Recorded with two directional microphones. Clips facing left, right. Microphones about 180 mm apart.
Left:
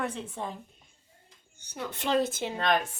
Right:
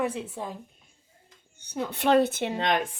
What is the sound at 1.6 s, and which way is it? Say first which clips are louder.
Speech: right 6 dB; 60° right (ahead or behind).